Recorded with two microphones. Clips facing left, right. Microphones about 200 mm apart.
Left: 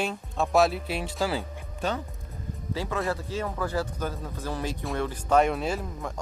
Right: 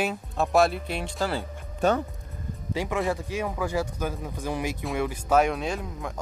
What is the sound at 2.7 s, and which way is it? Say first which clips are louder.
Speech: right 2 dB; 15° right (ahead or behind).